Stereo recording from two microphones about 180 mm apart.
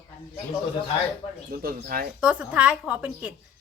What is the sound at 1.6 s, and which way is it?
Speech, 55° right (ahead or behind).